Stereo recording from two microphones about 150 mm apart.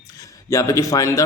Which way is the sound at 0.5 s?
20° left (ahead or behind).